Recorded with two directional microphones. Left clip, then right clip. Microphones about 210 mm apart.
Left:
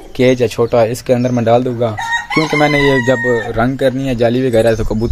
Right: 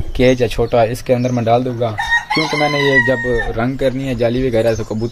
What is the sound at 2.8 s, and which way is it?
Speech, 30° left (ahead or behind).